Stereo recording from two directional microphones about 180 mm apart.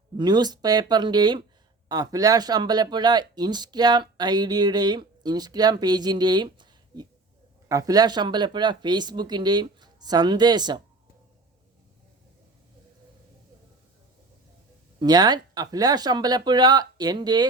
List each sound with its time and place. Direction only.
0.2 s speech: 25° right (ahead or behind)
14.9 s speech: 20° right (ahead or behind)